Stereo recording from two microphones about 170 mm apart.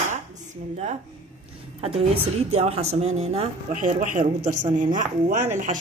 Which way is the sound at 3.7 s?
50° right (ahead or behind).